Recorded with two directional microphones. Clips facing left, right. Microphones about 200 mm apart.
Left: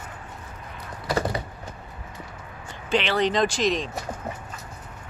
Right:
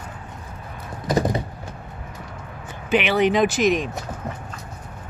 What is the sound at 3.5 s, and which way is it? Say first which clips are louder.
Speech: right 5 dB; 55° right (ahead or behind).